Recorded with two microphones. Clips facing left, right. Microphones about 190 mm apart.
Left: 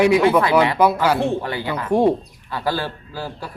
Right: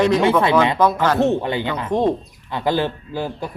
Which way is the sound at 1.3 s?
20° right (ahead or behind).